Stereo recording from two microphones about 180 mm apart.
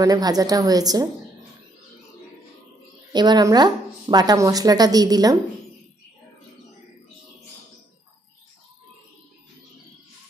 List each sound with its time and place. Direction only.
0.0 s a woman's voice: 20° right (ahead or behind)
3.1 s a woman's voice: 25° right (ahead or behind)